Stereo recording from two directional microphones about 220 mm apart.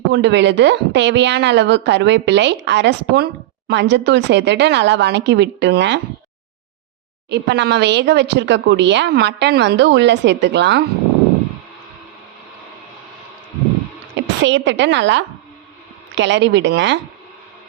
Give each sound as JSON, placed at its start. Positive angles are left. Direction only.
{"t": 0.1, "sound": "speech", "side_deg": -50}
{"t": 7.3, "sound": "speech", "side_deg": -50}
{"t": 14.2, "sound": "a woman's voice", "side_deg": -55}